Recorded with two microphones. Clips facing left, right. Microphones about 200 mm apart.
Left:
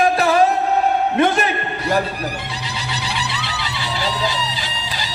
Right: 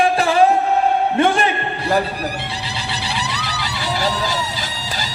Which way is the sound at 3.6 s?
45° right (ahead or behind).